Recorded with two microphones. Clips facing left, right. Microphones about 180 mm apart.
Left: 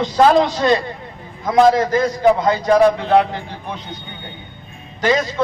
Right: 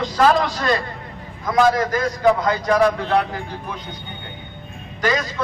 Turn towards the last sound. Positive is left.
turn(degrees=25)  # may be behind; listen again after turning